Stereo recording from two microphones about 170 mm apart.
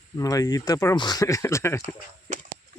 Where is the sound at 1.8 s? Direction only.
45° right (ahead or behind).